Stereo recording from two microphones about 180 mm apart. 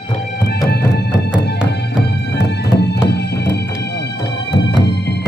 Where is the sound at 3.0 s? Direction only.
70° left (ahead or behind).